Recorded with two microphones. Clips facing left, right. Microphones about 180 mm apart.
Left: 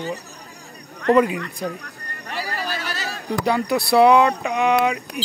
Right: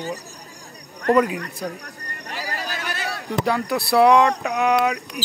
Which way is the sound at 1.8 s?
40° right (ahead or behind).